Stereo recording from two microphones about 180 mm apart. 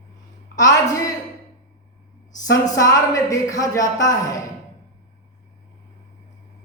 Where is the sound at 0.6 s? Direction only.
20° left (ahead or behind).